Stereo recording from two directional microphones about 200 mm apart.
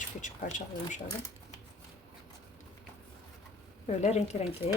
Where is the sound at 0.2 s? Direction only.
40° left (ahead or behind).